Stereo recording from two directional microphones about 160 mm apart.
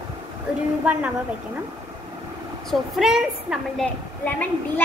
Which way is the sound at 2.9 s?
Centre (ahead or behind).